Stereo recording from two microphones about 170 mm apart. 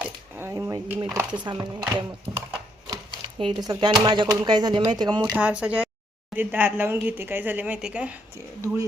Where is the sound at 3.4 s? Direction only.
25° right (ahead or behind).